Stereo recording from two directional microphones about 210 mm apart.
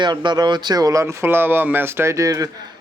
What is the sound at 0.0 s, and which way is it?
A man's voice, 20° right (ahead or behind).